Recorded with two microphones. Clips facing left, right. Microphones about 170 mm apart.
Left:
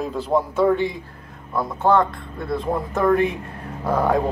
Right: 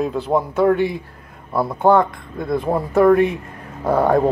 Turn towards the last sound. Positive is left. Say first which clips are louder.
# right 4 dB
turn(degrees=-10)  # may be behind; listen again after turning